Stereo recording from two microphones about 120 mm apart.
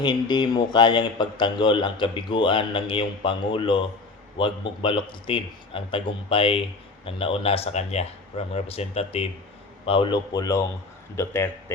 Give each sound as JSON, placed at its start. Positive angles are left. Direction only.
{"t": 0.0, "sound": "a man's voice", "side_deg": 40}
{"t": 9.8, "sound": "a man's voice", "side_deg": 45}
{"t": 10.3, "sound": "a man's voice", "side_deg": 30}